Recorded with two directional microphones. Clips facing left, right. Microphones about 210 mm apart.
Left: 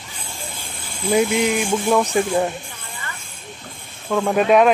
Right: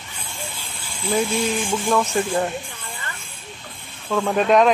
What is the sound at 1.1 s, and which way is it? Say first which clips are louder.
Speech: left 4 dB; 15° left (ahead or behind).